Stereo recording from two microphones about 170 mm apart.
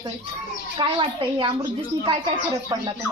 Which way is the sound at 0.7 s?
30° right (ahead or behind).